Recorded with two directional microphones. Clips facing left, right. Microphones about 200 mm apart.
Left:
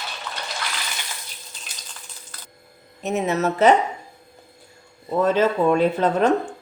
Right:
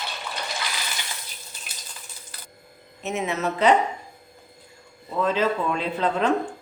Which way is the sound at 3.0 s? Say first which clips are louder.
Left 4 dB; 40° left (ahead or behind).